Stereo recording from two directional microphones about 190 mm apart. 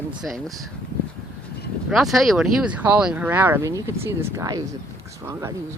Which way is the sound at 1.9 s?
Centre (ahead or behind).